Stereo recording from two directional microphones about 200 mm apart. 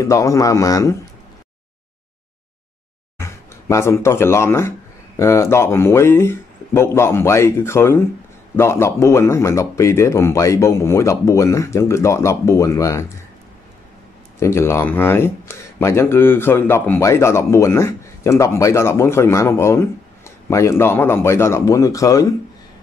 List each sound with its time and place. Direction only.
0.0 s speech: 15° left (ahead or behind)
3.2 s speech: 15° left (ahead or behind)
14.4 s speech: 10° left (ahead or behind)